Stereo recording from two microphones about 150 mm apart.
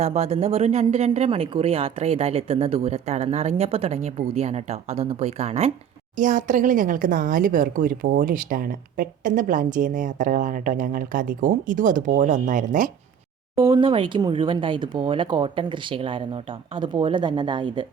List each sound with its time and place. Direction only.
0.0 s speech: 45° right (ahead or behind)
6.1 s speech: 60° right (ahead or behind)
13.6 s speech: 35° right (ahead or behind)